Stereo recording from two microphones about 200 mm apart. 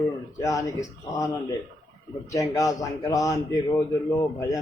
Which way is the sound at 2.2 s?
15° left (ahead or behind).